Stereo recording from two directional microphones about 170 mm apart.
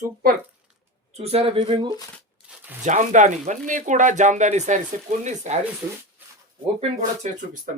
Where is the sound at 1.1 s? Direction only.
35° right (ahead or behind).